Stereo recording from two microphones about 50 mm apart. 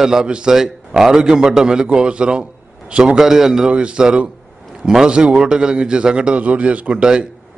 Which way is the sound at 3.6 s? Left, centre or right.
Right.